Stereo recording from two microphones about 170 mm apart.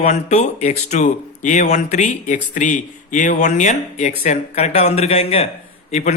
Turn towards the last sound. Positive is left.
turn(degrees=45)  # may be behind; listen again after turning